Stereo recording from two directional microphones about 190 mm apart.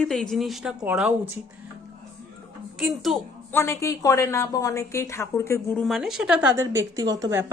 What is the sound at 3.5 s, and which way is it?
A woman's voice, 15° left (ahead or behind).